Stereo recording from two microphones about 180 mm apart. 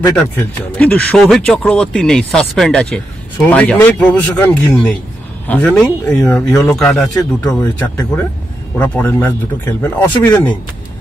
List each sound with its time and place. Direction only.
0.1 s a man's voice: 5° left (ahead or behind)